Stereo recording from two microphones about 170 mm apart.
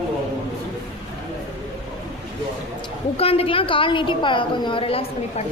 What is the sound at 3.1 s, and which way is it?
A woman's voice, 35° left (ahead or behind).